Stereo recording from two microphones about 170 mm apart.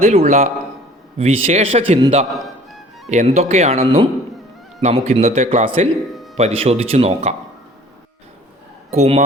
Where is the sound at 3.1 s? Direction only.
40° right (ahead or behind).